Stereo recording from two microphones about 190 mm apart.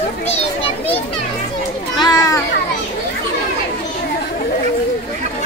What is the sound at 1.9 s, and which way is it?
Children playing, 20° left (ahead or behind).